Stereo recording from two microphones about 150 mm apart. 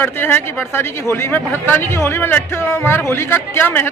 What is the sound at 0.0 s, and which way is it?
Speech, 15° left (ahead or behind).